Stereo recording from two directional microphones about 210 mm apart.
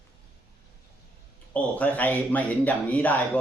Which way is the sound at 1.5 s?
5° left (ahead or behind).